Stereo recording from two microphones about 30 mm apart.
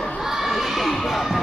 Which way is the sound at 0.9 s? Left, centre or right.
Centre.